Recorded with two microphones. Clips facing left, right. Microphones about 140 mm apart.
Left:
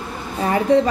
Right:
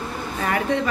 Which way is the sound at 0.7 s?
35° left (ahead or behind).